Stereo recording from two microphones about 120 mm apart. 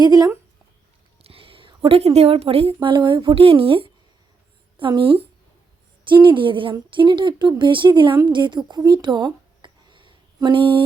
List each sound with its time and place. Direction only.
0.0 s speech: 35° right (ahead or behind)
1.2 s a woman's voice: 50° right (ahead or behind)